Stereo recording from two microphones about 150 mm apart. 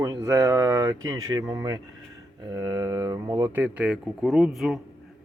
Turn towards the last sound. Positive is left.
turn(degrees=0)  # may be behind; listen again after turning